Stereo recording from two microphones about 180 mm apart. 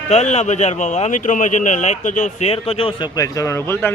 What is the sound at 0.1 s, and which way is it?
Speech, 40° left (ahead or behind).